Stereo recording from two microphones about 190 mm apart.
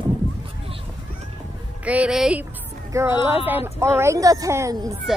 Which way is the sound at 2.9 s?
15° right (ahead or behind).